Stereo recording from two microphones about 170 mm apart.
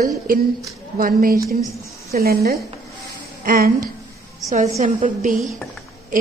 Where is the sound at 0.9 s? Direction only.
55° right (ahead or behind).